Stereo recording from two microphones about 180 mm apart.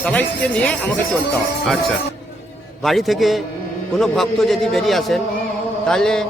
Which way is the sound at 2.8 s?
Centre (ahead or behind).